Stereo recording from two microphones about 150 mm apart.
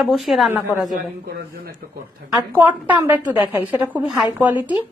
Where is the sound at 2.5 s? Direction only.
10° right (ahead or behind).